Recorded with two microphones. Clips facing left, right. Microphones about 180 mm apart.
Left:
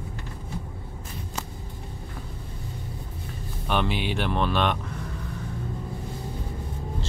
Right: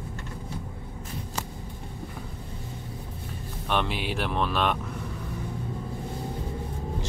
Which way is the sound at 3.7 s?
Centre (ahead or behind).